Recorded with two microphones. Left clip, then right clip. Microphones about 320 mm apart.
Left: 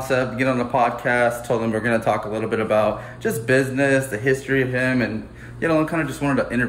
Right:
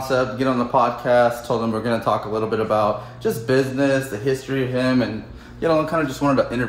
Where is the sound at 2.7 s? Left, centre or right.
Centre.